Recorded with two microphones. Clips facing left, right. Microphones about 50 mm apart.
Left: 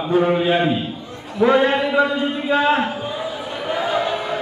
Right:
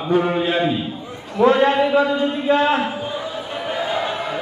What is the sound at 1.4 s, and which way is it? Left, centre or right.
Speech, centre.